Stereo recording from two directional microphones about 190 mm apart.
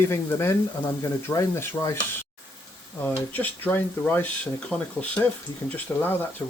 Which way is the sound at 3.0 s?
10° left (ahead or behind).